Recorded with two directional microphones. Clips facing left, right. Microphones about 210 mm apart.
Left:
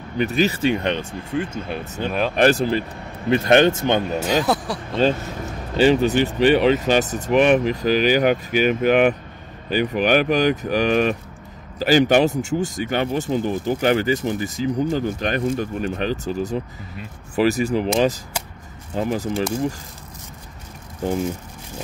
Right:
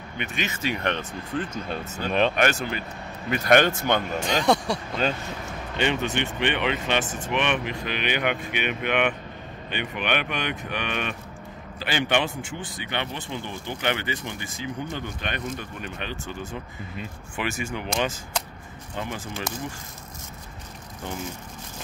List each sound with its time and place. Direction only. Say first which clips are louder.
0.2 s speech: left 11 dB; 35° left (ahead or behind)
0.8 s speech: left 4 dB; 15° left (ahead or behind)
2.3 s speech: left 8 dB; 35° left (ahead or behind)
4.2 s speech: left 2 dB; 5° left (ahead or behind)
5.8 s speech: left 10 dB; 35° left (ahead or behind)